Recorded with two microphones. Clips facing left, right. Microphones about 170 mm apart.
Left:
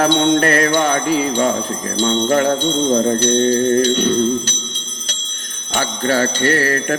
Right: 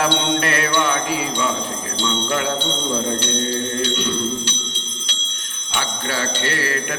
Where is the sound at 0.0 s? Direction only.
45° left (ahead or behind).